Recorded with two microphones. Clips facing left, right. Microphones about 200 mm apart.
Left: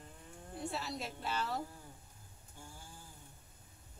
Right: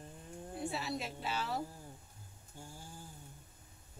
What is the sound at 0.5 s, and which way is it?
A woman's voice, 5° right (ahead or behind).